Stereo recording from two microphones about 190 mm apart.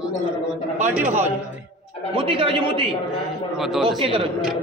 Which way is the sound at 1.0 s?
40° right (ahead or behind).